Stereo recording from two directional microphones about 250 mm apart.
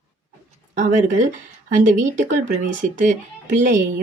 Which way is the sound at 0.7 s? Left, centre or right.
Right.